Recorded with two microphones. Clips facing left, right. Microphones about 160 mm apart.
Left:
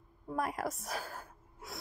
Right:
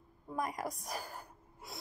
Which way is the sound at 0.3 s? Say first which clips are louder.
Left 2 dB; 5° left (ahead or behind).